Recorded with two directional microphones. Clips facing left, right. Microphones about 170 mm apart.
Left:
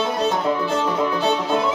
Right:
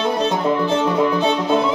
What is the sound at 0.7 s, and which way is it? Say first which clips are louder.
Music: right 4 dB; 10° right (ahead or behind).